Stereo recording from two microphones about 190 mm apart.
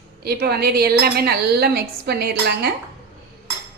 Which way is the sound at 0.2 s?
55° right (ahead or behind).